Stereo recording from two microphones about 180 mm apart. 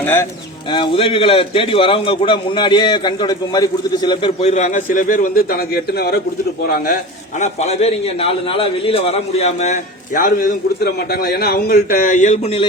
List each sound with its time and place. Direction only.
0.0 s speech: 10° left (ahead or behind)
0.7 s a man's voice: 30° left (ahead or behind)